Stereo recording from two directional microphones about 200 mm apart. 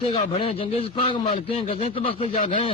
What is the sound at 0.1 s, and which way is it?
A man's voice, 25° left (ahead or behind).